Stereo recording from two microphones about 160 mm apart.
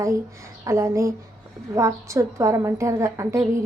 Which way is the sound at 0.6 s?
20° right (ahead or behind).